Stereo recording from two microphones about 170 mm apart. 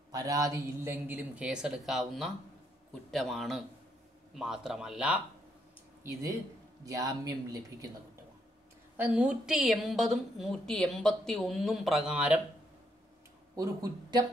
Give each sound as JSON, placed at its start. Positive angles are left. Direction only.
{"t": 0.1, "sound": "a man's voice", "side_deg": -20}
{"t": 6.9, "sound": "speech", "side_deg": -20}
{"t": 8.9, "sound": "a woman's voice", "side_deg": -10}
{"t": 13.6, "sound": "speech", "side_deg": -20}